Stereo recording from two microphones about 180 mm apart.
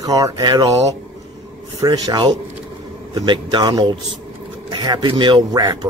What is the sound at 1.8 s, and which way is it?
Speech, 20° right (ahead or behind).